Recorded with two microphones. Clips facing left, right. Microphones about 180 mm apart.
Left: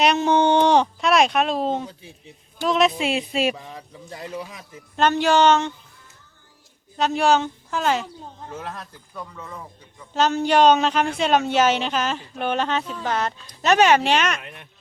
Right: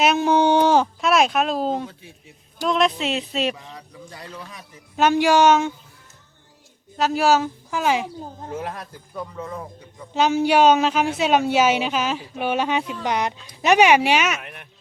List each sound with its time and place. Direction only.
0.0 s speech: 5° right (ahead or behind)
3.8 s a man's voice: 20° left (ahead or behind)
4.9 s a woman's voice: 10° right (ahead or behind)
6.9 s a woman's voice: 5° right (ahead or behind)
9.3 s speech: 25° right (ahead or behind)
10.2 s a woman's voice: 10° right (ahead or behind)